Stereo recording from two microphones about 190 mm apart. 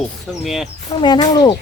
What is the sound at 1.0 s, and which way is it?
Speech, 20° left (ahead or behind).